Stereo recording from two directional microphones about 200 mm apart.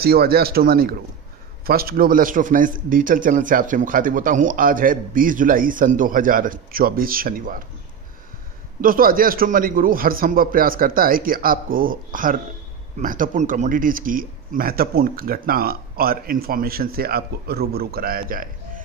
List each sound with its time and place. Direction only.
0.0 s a man's voice: 50° right (ahead or behind)
8.8 s a man's voice: 45° right (ahead or behind)